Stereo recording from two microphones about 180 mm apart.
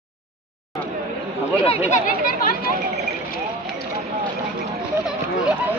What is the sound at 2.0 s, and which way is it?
Speech, 50° left (ahead or behind).